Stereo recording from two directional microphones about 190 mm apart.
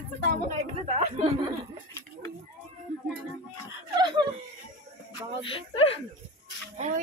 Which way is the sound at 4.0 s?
25° right (ahead or behind).